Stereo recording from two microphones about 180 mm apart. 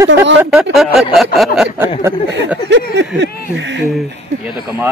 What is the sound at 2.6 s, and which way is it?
Speech, 80° right.